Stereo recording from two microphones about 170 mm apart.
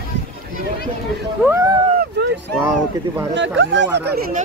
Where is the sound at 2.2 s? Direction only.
90° right.